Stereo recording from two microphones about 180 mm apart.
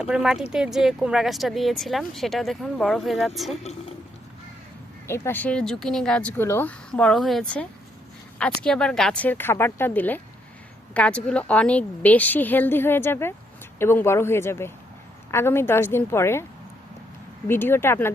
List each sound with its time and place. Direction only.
0.0 s speech: 5° right (ahead or behind)
3.6 s a woman's voice: 35° left (ahead or behind)
5.0 s speech: 15° left (ahead or behind)
17.5 s speech: 10° left (ahead or behind)